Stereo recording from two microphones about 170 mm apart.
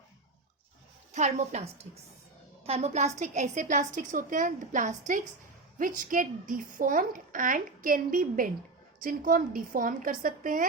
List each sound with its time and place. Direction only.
1.1 s a woman's voice: 40° right (ahead or behind)